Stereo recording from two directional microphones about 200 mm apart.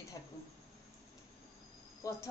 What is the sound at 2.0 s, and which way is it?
Speech, 15° left (ahead or behind).